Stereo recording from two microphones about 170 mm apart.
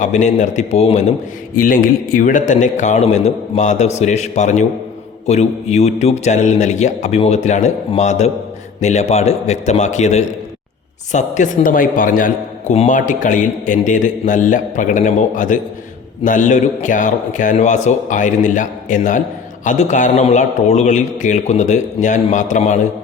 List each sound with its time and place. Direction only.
0.0 s a man's voice: 45° left (ahead or behind)
1.5 s a man's voice: 55° left (ahead or behind)